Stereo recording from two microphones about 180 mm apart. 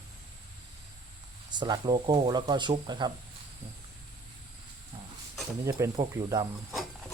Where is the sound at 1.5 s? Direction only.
25° right (ahead or behind).